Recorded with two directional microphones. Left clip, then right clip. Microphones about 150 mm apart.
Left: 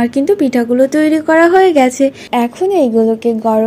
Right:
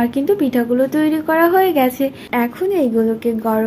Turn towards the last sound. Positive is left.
turn(degrees=35)  # may be behind; listen again after turning